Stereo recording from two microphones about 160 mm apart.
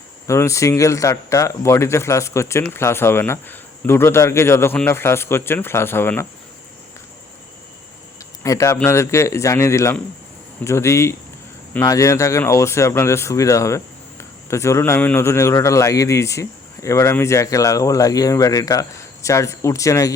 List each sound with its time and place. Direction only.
0.3 s speech: 20° left (ahead or behind)
8.4 s speech: 20° left (ahead or behind)